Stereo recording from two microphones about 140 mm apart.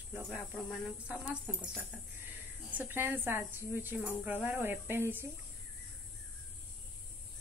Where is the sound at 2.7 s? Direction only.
15° right (ahead or behind).